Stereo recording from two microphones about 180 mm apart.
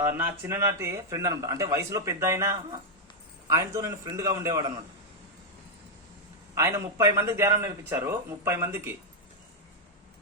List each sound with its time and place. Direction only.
0.0 s speech: 10° right (ahead or behind)
6.5 s speech: 15° right (ahead or behind)